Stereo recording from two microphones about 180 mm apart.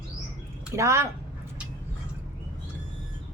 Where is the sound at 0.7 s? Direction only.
15° right (ahead or behind).